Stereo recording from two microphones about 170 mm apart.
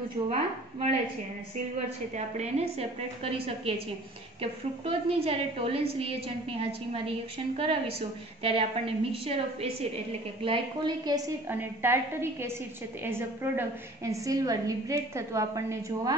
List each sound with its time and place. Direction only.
0.3 s a woman's voice: 40° right (ahead or behind)
2.1 s a woman's voice: 40° right (ahead or behind)
11.2 s a woman's voice: 15° right (ahead or behind)